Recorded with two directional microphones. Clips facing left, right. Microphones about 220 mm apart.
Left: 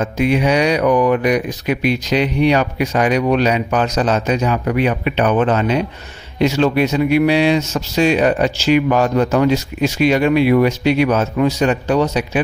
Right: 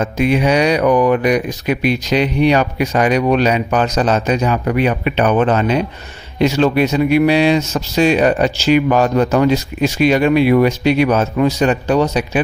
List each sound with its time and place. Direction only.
0.0 s speech: 40° right (ahead or behind)